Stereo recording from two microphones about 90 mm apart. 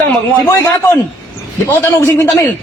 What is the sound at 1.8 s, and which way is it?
Speech, 30° left (ahead or behind).